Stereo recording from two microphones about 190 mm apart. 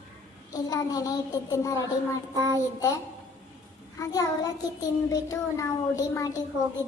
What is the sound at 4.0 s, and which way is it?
A child's voice, 20° left (ahead or behind).